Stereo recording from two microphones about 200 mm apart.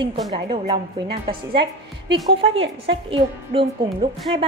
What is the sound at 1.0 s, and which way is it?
A woman's voice, 25° right (ahead or behind).